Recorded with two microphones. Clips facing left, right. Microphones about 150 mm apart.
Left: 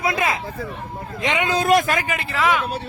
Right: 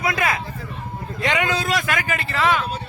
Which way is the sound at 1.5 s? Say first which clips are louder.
Left 7 dB; 50° left (ahead or behind).